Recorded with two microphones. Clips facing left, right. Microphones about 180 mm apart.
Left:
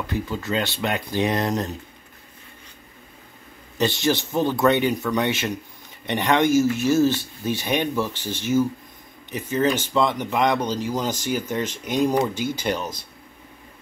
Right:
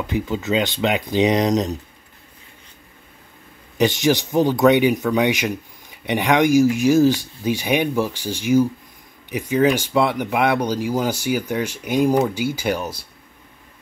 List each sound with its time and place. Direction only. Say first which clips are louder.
0.0 s speech: right 4 dB; 20° right (ahead or behind)
3.7 s speech: right 4 dB; 15° right (ahead or behind)